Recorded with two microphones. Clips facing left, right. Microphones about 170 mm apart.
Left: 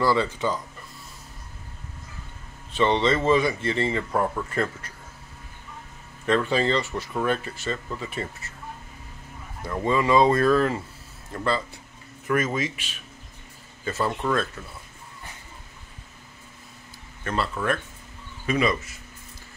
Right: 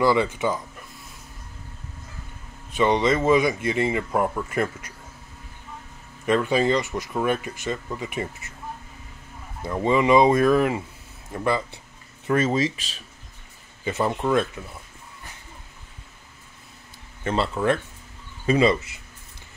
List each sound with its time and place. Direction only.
0.0 s a man's voice: 15° right (ahead or behind)
2.7 s a man's voice: 10° right (ahead or behind)
6.2 s a man's voice: 10° right (ahead or behind)
9.6 s a man's voice: 20° right (ahead or behind)
12.3 s speech: 30° right (ahead or behind)
13.8 s a man's voice: 20° right (ahead or behind)
17.2 s speech: 25° right (ahead or behind)